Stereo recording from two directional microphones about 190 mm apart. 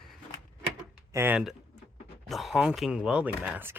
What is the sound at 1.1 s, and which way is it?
Speech, 10° right (ahead or behind).